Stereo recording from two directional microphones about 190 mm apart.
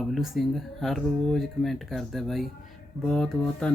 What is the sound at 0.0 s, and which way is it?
Speech, centre (ahead or behind).